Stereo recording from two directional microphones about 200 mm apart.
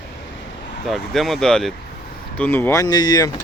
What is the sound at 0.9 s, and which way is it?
Speech, centre (ahead or behind).